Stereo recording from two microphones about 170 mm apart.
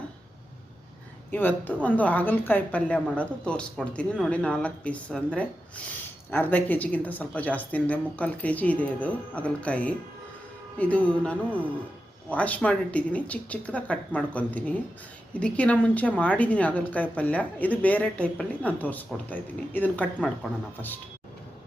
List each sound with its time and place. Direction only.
1.3 s a woman's voice: 10° left (ahead or behind)